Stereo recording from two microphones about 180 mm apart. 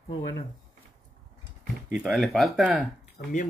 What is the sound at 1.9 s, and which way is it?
Speech, 5° right (ahead or behind).